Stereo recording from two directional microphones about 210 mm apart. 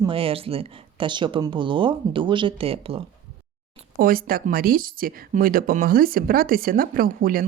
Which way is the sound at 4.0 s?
45° right (ahead or behind).